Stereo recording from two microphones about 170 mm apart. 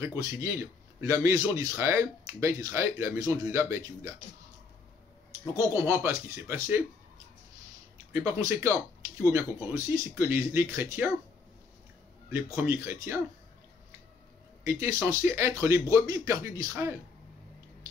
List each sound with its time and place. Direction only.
0.0 s a man's voice: 15° right (ahead or behind)
5.9 s speech: 15° right (ahead or behind)
8.3 s a man's voice: 20° right (ahead or behind)
12.5 s speech: 15° right (ahead or behind)
14.6 s speech: 15° right (ahead or behind)